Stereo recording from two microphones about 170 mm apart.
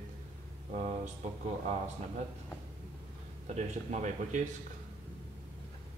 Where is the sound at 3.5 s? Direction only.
45° right (ahead or behind).